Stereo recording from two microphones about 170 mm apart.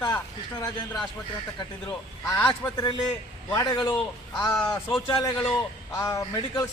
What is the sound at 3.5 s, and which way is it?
Speech, 25° left (ahead or behind).